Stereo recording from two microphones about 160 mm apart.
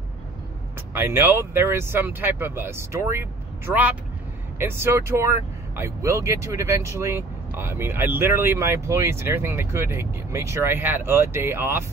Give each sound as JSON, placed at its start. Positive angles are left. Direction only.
{"t": 0.9, "sound": "speech", "side_deg": -15}